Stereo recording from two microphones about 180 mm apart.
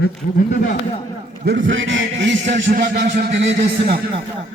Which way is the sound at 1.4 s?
90° right.